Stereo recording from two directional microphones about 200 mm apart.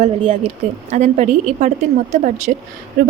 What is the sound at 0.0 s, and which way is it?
A woman's voice, 30° right (ahead or behind).